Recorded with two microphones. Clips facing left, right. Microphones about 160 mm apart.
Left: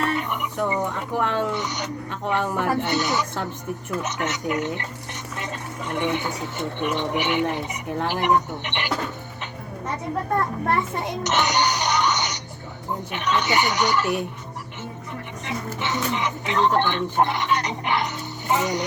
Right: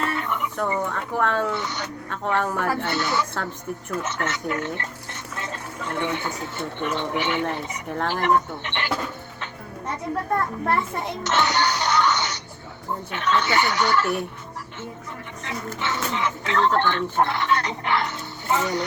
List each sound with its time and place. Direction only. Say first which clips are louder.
0.1 s speech: left 1 dB; 15° left (ahead or behind)
11.2 s music: even; 15° left (ahead or behind)
13.1 s speech: right 1 dB; 15° left (ahead or behind)
15.4 s speech: even; 15° left (ahead or behind)